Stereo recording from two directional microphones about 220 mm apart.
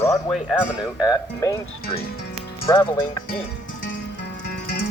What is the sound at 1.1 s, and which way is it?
Speech, 15° left (ahead or behind).